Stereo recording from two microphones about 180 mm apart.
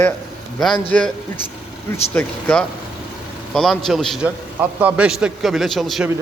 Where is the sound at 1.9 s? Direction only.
10° left (ahead or behind).